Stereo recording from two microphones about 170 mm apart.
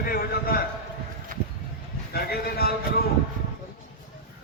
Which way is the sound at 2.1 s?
65° left (ahead or behind).